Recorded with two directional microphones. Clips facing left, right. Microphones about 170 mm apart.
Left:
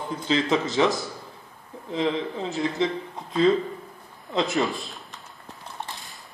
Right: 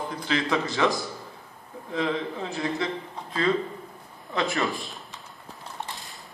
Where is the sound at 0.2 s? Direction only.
20° left (ahead or behind).